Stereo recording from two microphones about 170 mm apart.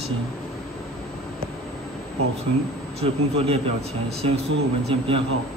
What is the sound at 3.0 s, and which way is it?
Speech, 35° right (ahead or behind).